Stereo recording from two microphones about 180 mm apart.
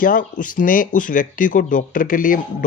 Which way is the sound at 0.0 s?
50° left (ahead or behind).